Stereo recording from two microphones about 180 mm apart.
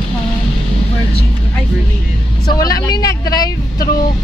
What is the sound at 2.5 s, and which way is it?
A woman's voice, 20° left (ahead or behind).